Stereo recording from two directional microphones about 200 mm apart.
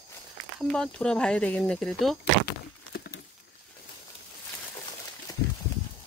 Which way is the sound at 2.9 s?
50° left (ahead or behind).